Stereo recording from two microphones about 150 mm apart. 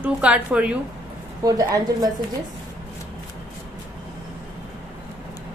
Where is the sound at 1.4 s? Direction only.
25° right (ahead or behind).